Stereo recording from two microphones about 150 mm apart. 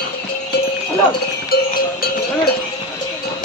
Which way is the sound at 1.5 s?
85° left.